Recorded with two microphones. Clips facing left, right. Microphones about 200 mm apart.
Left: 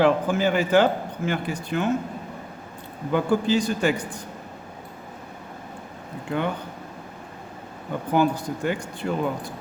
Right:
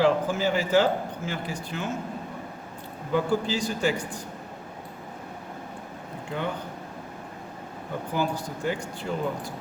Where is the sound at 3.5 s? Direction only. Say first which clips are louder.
Left 5 dB; 55° left (ahead or behind).